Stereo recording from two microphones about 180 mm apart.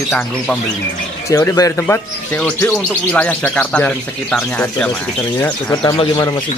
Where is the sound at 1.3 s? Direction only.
20° left (ahead or behind).